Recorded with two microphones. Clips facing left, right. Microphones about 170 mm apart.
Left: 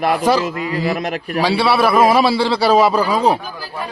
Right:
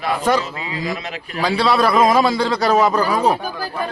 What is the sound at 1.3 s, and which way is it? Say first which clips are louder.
A man's voice: left 1 dB; 10° left (ahead or behind).